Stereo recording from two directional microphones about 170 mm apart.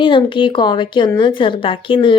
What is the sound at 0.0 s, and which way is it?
Speech, 30° left (ahead or behind).